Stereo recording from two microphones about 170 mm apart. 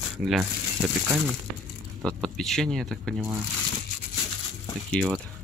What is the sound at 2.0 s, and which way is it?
Speech, 5° left (ahead or behind).